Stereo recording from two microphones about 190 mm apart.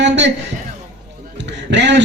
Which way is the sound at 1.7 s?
65° right (ahead or behind).